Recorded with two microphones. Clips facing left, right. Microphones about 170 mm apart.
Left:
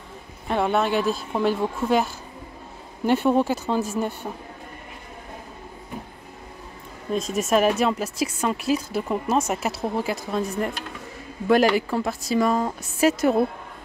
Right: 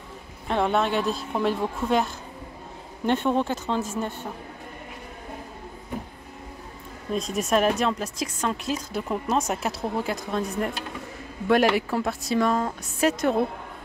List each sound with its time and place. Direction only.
0.5 s a woman's voice: 5° left (ahead or behind)
3.1 s a woman's voice: 10° left (ahead or behind)
7.1 s a woman's voice: centre (ahead or behind)